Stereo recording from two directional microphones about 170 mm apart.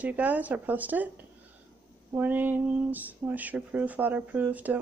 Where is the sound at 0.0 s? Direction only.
10° right (ahead or behind).